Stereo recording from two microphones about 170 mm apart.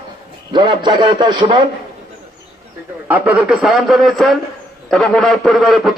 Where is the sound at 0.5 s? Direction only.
25° right (ahead or behind).